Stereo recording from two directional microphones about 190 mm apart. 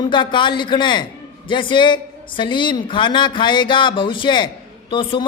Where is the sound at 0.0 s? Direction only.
25° left (ahead or behind).